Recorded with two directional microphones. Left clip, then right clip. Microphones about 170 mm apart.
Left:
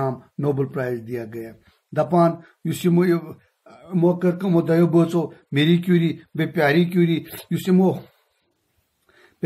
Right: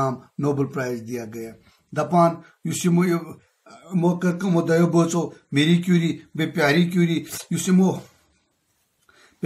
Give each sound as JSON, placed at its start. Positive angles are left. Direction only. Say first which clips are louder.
{"t": 0.0, "sound": "speech", "louder": "even", "side_deg": 40}